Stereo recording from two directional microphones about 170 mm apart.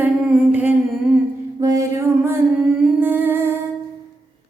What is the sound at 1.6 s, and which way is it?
Music, 20° right (ahead or behind).